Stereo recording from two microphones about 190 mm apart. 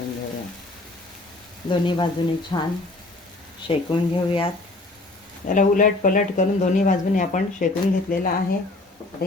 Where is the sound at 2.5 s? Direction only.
20° left (ahead or behind).